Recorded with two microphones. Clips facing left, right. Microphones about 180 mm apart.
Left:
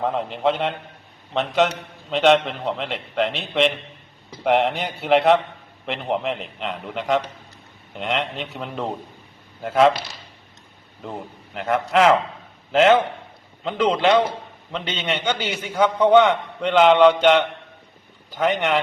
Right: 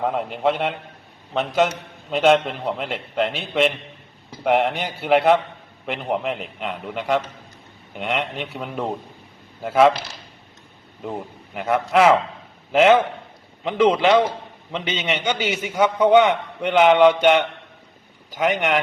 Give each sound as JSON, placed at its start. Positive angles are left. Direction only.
{"t": 0.0, "sound": "a man's voice", "side_deg": -5}
{"t": 11.0, "sound": "a man's voice", "side_deg": -5}